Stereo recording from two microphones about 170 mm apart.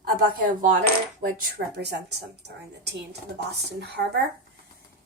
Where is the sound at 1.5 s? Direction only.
80° right.